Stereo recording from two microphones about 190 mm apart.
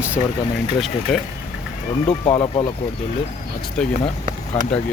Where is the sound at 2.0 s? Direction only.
25° left (ahead or behind).